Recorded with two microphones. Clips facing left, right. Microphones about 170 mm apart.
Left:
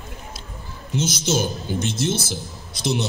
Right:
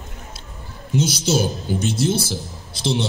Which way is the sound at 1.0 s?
30° right (ahead or behind).